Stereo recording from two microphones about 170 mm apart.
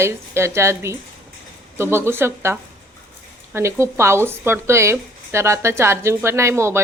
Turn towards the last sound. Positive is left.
turn(degrees=-15)  # may be behind; listen again after turning